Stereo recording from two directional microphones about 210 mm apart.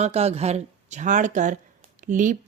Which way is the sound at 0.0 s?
30° right (ahead or behind).